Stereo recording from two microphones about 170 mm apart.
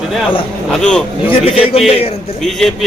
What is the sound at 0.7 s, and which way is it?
Speech, 5° left (ahead or behind).